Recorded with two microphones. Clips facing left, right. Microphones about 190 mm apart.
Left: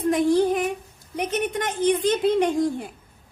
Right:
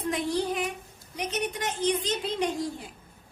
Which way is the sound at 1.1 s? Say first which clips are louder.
Left 6 dB; 55° left (ahead or behind).